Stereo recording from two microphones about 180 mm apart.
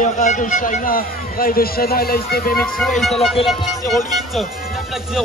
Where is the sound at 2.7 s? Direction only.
Centre (ahead or behind).